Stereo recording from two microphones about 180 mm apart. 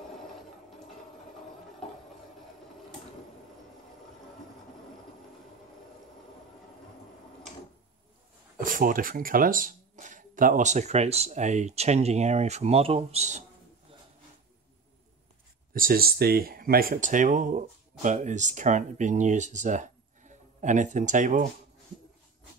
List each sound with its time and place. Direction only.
8.6 s speech: 50° right (ahead or behind)
15.7 s speech: 55° right (ahead or behind)